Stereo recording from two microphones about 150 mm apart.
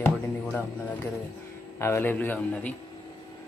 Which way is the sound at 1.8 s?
15° left (ahead or behind).